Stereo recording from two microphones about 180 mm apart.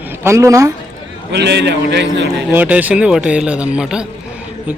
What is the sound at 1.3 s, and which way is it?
A man's voice, 70° right (ahead or behind).